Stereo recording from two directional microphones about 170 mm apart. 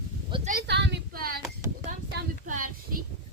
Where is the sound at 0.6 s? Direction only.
85° right; by 1.3 s 60° right (ahead or behind).